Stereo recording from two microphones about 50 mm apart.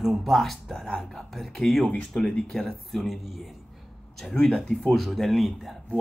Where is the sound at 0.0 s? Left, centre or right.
Centre.